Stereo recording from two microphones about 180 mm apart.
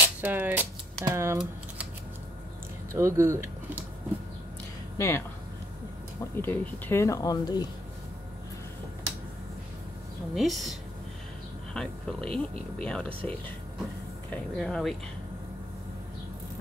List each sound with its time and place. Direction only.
0.0 s speech: 10° right (ahead or behind)
2.9 s speech: 15° right (ahead or behind)
4.9 s speech: 15° left (ahead or behind)
6.3 s speech: 10° left (ahead or behind)
10.3 s speech: centre (ahead or behind)
14.3 s speech: centre (ahead or behind)